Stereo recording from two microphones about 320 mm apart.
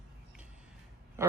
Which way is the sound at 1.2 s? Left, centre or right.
Centre.